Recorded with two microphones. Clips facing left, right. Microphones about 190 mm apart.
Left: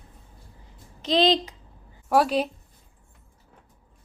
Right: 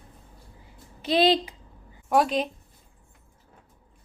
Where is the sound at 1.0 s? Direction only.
10° right (ahead or behind).